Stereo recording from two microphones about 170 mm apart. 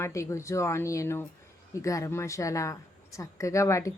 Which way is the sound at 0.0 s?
20° left (ahead or behind).